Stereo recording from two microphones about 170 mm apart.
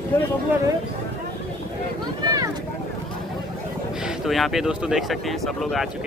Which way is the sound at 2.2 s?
20° right (ahead or behind).